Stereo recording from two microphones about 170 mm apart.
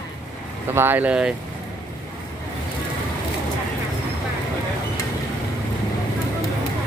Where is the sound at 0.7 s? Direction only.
10° right (ahead or behind).